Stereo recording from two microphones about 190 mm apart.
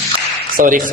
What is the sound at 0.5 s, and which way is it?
Speech, 45° right (ahead or behind).